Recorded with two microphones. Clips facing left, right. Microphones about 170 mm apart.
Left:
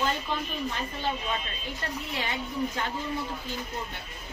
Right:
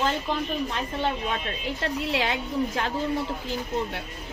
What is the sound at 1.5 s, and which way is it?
Speech, 85° right.